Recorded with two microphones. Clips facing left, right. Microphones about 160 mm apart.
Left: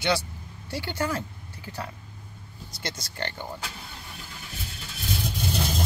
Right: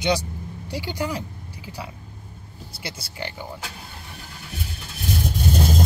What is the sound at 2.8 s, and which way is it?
Speech, 10° right (ahead or behind).